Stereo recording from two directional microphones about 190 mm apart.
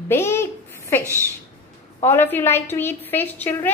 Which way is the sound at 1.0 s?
15° right (ahead or behind).